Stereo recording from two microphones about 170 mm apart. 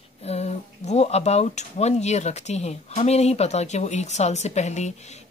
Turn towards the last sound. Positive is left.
turn(degrees=45)  # may be behind; listen again after turning